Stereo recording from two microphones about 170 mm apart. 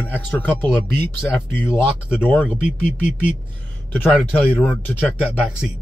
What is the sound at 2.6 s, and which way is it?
Speech, 45° left (ahead or behind).